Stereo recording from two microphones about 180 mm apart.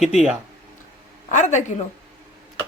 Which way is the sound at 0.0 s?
5° right (ahead or behind).